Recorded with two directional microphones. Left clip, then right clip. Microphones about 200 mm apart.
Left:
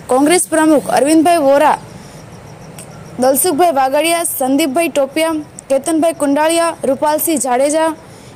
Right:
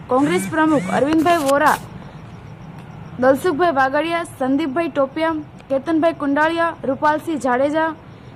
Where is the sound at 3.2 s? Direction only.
20° left (ahead or behind).